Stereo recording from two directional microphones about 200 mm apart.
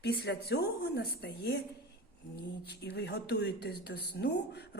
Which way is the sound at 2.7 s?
55° left (ahead or behind).